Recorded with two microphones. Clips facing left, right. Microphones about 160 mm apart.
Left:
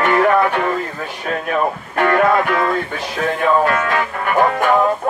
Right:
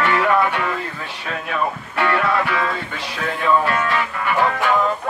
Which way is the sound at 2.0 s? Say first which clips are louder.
Left 5 dB; 50° left (ahead or behind).